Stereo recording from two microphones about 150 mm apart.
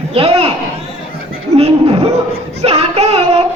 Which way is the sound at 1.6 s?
40° right (ahead or behind).